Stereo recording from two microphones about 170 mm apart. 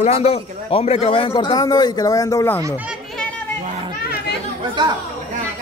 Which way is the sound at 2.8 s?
Centre (ahead or behind).